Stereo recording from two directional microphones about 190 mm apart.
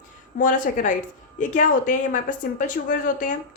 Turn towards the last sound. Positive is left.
turn(degrees=40)  # may be behind; listen again after turning